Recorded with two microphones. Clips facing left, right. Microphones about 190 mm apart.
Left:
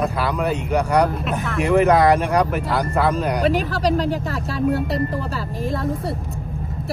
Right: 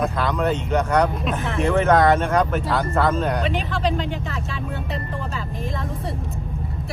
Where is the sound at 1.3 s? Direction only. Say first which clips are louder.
Left 2 dB; centre (ahead or behind).